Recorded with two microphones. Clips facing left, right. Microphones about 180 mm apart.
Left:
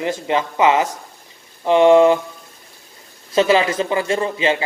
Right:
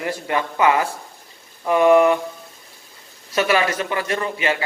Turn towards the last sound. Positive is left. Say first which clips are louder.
# left 4 dB
turn(degrees=25)  # may be behind; listen again after turning